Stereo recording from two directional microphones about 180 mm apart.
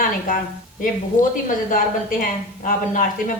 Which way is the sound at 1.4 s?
50° left (ahead or behind).